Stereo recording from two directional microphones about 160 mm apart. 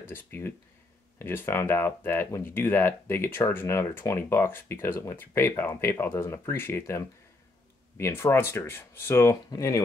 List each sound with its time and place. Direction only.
0.1 s speech: 15° left (ahead or behind)